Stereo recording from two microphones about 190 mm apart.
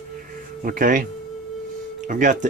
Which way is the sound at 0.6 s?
45° right (ahead or behind).